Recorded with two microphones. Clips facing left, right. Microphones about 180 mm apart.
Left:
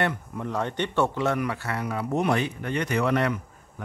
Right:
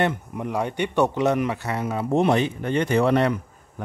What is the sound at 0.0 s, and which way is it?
A man's voice, 20° right (ahead or behind).